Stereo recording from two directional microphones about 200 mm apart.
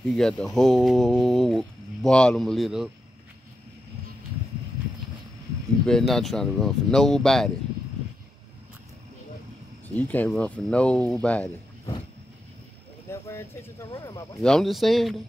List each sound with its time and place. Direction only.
0.1 s speech: centre (ahead or behind)
5.9 s speech: 5° left (ahead or behind)
9.8 s speech: 10° left (ahead or behind)
13.1 s speech: 15° left (ahead or behind)
14.4 s speech: centre (ahead or behind)